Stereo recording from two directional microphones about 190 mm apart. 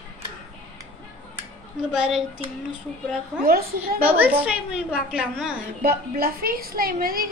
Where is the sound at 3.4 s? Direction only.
50° right (ahead or behind).